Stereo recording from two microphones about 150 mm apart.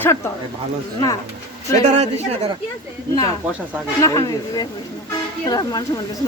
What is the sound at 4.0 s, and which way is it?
Speech, 25° left (ahead or behind).